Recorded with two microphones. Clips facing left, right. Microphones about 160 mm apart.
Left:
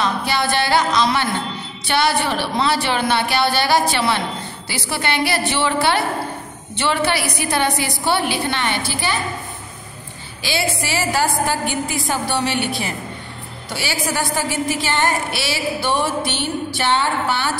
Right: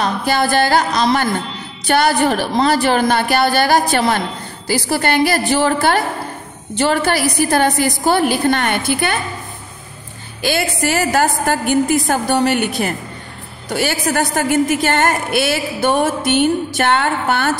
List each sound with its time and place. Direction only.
0.0 s a woman's voice: 45° right (ahead or behind)
10.4 s a woman's voice: 50° right (ahead or behind)